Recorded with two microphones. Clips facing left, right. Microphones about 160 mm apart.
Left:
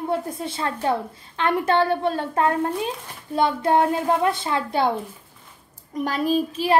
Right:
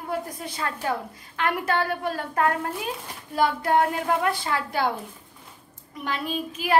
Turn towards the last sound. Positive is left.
turn(degrees=40)  # may be behind; listen again after turning